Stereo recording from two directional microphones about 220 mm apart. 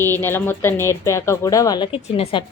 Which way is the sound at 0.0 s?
10° left (ahead or behind).